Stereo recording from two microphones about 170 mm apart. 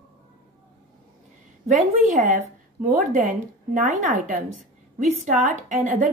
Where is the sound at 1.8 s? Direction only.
50° right (ahead or behind).